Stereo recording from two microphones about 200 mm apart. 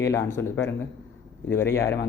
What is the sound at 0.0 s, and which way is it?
Speech, 15° left (ahead or behind).